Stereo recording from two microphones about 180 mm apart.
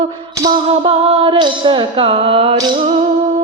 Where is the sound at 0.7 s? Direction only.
30° right (ahead or behind).